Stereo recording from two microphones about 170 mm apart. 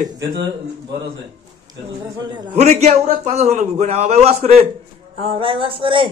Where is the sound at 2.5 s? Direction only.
40° right (ahead or behind).